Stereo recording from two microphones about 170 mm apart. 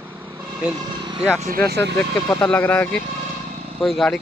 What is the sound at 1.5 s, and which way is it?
Speech, 65° right (ahead or behind).